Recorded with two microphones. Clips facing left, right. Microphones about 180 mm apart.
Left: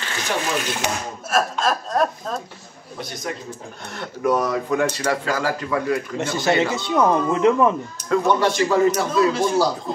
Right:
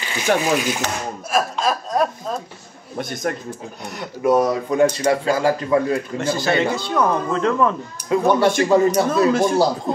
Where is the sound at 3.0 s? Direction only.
50° right (ahead or behind).